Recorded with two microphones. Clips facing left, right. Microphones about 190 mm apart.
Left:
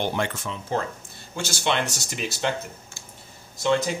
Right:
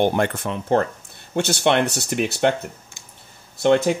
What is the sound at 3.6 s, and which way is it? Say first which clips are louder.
Speech: right 6 dB; 60° right (ahead or behind).